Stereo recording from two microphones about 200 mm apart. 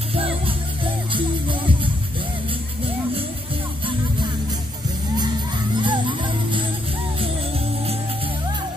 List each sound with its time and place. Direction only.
0.1 s music: 30° right (ahead or behind)
5.8 s music: 25° right (ahead or behind)